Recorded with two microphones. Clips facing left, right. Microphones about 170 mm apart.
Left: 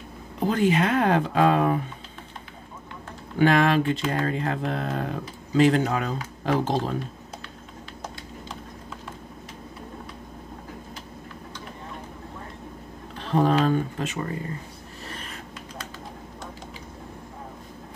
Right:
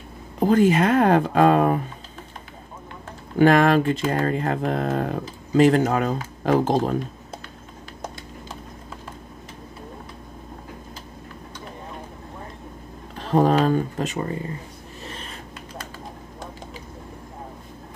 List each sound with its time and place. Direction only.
0.5 s speech: 45° right (ahead or behind)
3.3 s speech: 45° right (ahead or behind)
13.2 s speech: 40° right (ahead or behind)